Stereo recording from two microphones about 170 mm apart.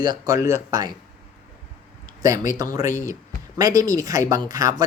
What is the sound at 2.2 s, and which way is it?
Speech, 20° right (ahead or behind).